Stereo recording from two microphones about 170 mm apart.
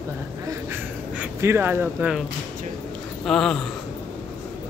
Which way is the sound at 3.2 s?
Centre (ahead or behind).